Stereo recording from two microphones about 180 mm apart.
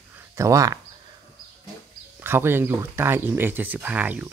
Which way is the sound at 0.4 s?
20° right (ahead or behind).